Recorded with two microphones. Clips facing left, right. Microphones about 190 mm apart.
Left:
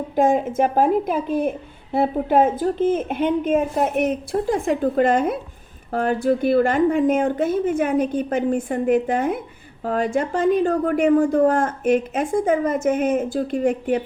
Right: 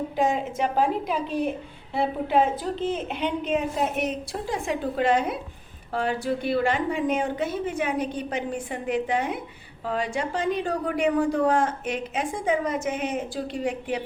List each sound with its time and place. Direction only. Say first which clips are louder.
0.2 s a woman's voice: left 7 dB; 50° left (ahead or behind)